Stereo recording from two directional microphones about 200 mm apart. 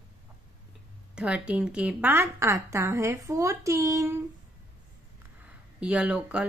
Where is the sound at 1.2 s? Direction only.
5° right (ahead or behind).